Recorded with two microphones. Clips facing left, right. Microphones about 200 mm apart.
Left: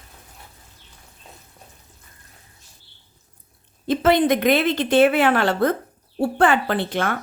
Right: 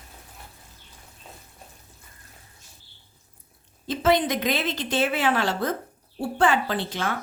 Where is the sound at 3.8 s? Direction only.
60° left (ahead or behind).